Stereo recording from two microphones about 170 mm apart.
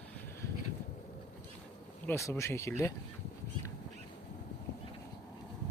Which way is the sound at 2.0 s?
15° left (ahead or behind).